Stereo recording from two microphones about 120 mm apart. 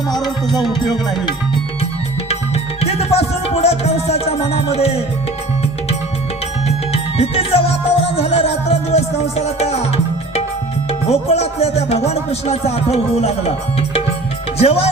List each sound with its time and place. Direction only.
2.8 s music: 60° left (ahead or behind)
6.7 s music: 55° left (ahead or behind)
11.1 s music: 60° left (ahead or behind)